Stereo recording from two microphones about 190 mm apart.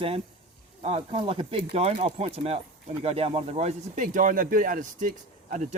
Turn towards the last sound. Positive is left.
turn(degrees=-40)  # may be behind; listen again after turning